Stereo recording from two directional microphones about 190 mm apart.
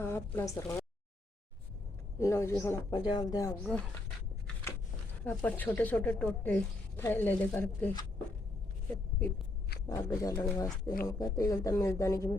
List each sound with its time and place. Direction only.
0.0 s speech: 10° left (ahead or behind)
2.1 s speech: 15° left (ahead or behind)
5.2 s speech: 10° left (ahead or behind)
10.2 s speech: 20° left (ahead or behind)